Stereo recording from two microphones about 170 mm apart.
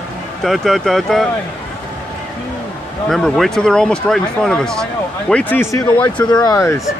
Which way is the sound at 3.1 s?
5° left (ahead or behind).